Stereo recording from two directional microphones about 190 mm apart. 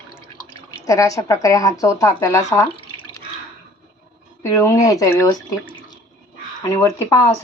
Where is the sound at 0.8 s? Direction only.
15° left (ahead or behind).